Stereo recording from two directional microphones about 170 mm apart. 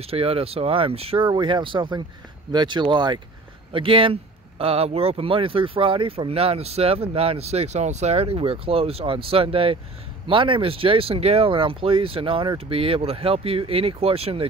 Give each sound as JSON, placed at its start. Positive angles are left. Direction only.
{"t": 0.0, "sound": "speech", "side_deg": -35}